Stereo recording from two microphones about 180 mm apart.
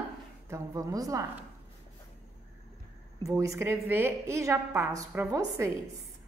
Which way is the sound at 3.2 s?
15° right (ahead or behind).